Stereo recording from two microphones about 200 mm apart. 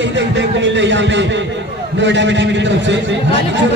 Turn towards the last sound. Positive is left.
turn(degrees=-65)  # may be behind; listen again after turning